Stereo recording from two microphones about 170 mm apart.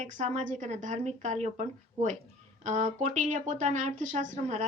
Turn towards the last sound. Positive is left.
turn(degrees=-45)  # may be behind; listen again after turning